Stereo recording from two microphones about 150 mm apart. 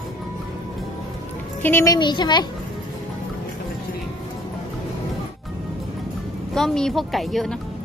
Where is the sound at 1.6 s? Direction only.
15° left (ahead or behind).